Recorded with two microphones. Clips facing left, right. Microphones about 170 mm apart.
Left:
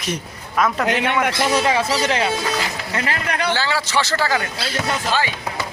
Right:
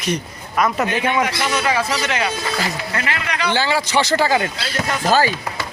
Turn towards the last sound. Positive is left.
turn(degrees=-40)  # may be behind; listen again after turning